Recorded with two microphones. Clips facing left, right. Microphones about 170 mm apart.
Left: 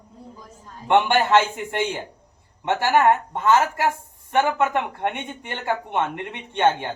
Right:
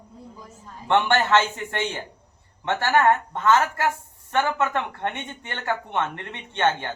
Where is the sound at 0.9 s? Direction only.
15° left (ahead or behind).